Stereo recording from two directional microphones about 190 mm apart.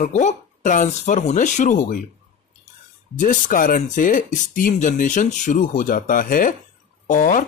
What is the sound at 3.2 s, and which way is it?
Speech, 45° left (ahead or behind).